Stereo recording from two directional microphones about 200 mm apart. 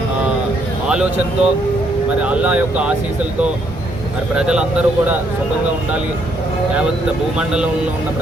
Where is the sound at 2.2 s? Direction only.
5° right (ahead or behind).